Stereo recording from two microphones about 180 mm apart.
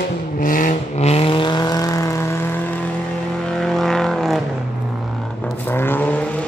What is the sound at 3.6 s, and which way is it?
Vehicle, centre (ahead or behind).